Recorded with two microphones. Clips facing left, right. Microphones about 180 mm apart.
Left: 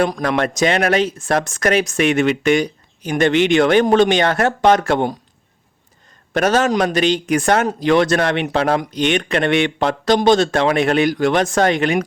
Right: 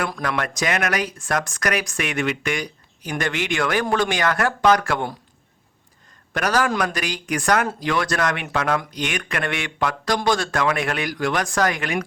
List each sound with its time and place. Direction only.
0.2 s speech: 25° left (ahead or behind)
6.3 s speech: 25° left (ahead or behind)